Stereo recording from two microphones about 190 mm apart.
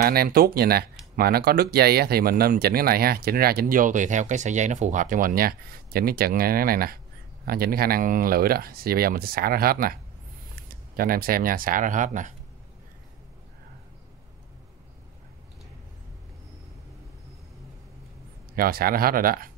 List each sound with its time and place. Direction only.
0.0 s speech: 50° right (ahead or behind)
11.0 s speech: 50° right (ahead or behind)
18.6 s speech: 50° right (ahead or behind)